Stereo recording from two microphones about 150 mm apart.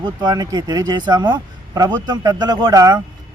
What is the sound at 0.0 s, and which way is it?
Speech, 30° right (ahead or behind).